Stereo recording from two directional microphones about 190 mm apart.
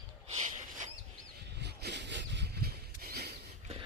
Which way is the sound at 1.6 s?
60° right (ahead or behind).